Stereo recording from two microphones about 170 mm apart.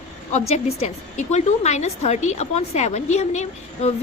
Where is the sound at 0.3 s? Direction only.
40° left (ahead or behind).